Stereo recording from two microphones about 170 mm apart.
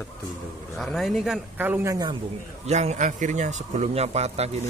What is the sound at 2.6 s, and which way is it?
Speech, 40° right (ahead or behind).